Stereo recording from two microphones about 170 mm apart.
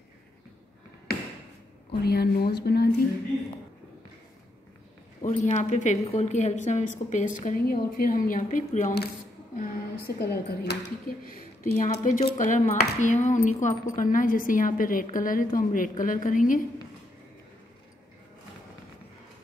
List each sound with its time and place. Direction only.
1.9 s speech: 70° left (ahead or behind)
5.2 s speech: 45° left (ahead or behind)
9.6 s speech: 65° left (ahead or behind)
11.6 s speech: 50° left (ahead or behind)